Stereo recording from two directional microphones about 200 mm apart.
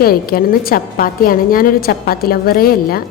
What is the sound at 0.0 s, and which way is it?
A woman's voice, 50° left (ahead or behind).